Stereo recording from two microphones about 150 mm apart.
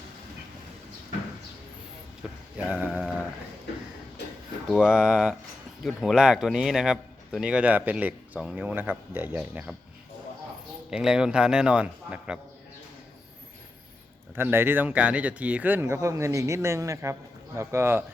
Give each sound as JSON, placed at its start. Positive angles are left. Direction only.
{"t": 2.6, "sound": "a man's voice", "side_deg": -10}
{"t": 4.7, "sound": "a man's voice", "side_deg": -5}
{"t": 10.9, "sound": "a man's voice", "side_deg": -5}
{"t": 14.3, "sound": "a man's voice", "side_deg": -15}